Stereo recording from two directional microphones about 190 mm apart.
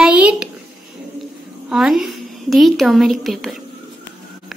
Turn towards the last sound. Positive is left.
turn(degrees=0)  # may be behind; listen again after turning